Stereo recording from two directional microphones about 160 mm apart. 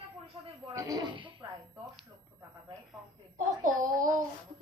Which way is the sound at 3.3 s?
55° right (ahead or behind).